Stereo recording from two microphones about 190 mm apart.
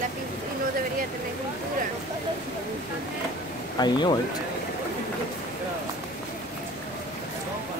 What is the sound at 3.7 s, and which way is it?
Speech, 20° left (ahead or behind).